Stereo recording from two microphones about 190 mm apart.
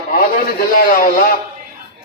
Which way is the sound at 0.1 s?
50° left (ahead or behind).